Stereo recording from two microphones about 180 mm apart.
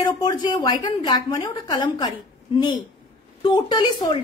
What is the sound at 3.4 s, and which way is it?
Speech, 25° left (ahead or behind).